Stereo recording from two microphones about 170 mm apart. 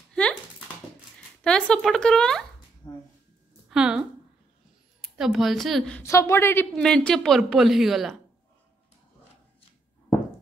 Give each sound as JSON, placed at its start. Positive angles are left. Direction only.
{"t": 0.1, "sound": "dog", "side_deg": 5}
{"t": 1.1, "sound": "speech", "side_deg": 5}
{"t": 2.8, "sound": "a sound", "side_deg": 25}
{"t": 3.6, "sound": "a sound", "side_deg": -5}
{"t": 5.0, "sound": "a woman's voice", "side_deg": 0}
{"t": 6.0, "sound": "a woman's voice", "side_deg": 20}